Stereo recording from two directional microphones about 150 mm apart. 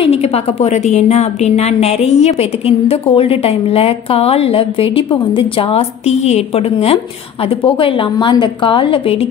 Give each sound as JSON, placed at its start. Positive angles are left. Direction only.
{"t": 0.0, "sound": "a woman's voice", "side_deg": 40}